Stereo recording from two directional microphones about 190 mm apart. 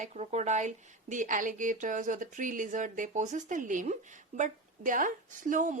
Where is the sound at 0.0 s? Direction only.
35° right (ahead or behind).